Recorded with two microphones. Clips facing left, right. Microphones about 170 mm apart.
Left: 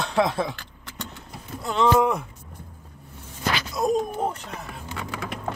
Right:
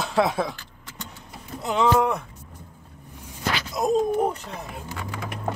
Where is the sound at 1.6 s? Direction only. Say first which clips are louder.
Even; 15° right (ahead or behind).